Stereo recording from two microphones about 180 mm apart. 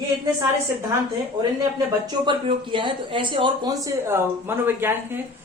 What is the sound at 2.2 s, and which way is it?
Speech, 25° right (ahead or behind).